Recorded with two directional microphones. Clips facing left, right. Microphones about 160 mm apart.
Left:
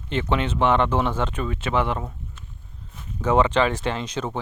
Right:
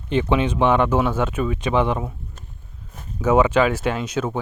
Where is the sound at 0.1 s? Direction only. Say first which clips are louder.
Right 4 dB; 15° right (ahead or behind).